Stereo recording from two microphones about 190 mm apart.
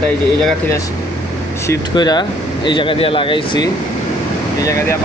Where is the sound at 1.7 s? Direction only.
20° left (ahead or behind).